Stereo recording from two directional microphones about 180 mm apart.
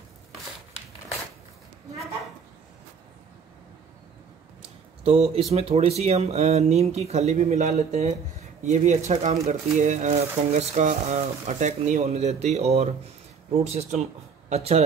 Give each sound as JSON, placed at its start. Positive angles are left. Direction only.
{"t": 4.6, "sound": "speech", "side_deg": -35}